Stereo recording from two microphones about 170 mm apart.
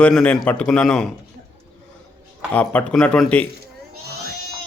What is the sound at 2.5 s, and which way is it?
A man's voice, 10° left (ahead or behind).